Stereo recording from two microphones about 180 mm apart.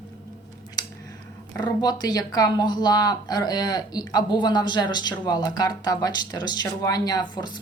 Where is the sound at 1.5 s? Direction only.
20° left (ahead or behind).